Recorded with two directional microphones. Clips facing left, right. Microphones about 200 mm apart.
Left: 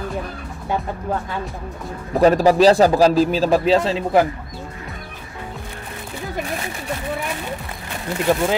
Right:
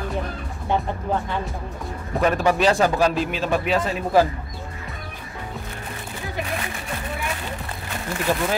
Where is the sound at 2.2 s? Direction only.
35° left (ahead or behind).